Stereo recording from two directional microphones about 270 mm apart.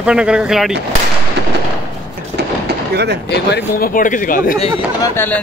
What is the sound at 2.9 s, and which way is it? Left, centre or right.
Speech, right.